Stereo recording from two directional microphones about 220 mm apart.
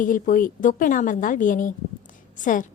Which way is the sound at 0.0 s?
40° left (ahead or behind).